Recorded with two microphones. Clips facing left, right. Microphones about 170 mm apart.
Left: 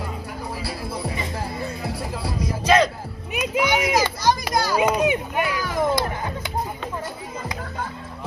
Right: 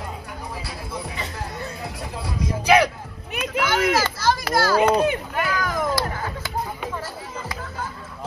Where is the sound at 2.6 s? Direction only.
10° right (ahead or behind).